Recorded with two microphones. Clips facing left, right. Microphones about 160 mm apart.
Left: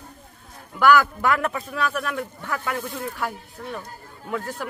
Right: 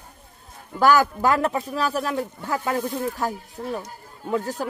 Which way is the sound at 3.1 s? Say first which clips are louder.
Right 3 dB; 40° right (ahead or behind).